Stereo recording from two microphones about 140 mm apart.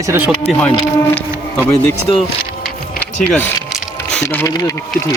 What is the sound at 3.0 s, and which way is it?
Speech, 10° left (ahead or behind).